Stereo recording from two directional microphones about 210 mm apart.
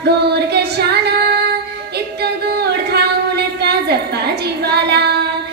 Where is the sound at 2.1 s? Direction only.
50° right (ahead or behind).